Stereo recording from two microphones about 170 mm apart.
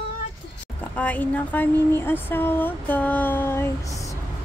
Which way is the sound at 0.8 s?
10° left (ahead or behind).